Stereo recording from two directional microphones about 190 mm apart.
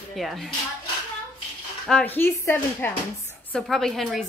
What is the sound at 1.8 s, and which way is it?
Speech, 5° left (ahead or behind).